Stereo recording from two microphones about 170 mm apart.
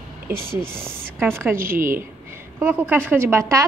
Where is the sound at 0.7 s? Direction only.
5° left (ahead or behind).